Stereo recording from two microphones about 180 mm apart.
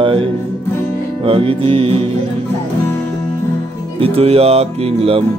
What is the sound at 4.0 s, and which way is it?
Speech, 35° right (ahead or behind).